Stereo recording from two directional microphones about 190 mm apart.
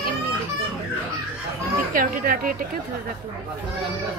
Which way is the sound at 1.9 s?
45° right (ahead or behind).